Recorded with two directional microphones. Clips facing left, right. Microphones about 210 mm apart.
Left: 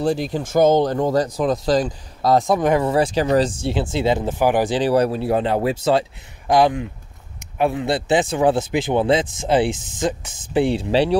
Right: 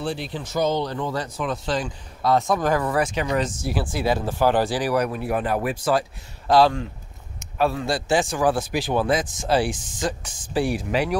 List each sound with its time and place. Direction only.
0.0 s speech: 40° left (ahead or behind)